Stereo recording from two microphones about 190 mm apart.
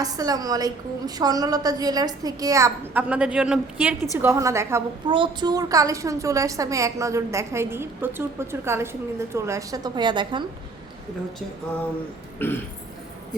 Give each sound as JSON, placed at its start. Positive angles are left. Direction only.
{"t": 0.0, "sound": "a woman's voice", "side_deg": -20}